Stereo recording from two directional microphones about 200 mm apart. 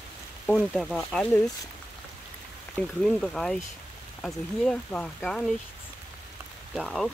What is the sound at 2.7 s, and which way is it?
Speech, 5° left (ahead or behind).